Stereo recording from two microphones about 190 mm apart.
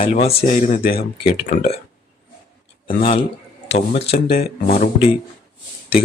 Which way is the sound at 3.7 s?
35° left (ahead or behind).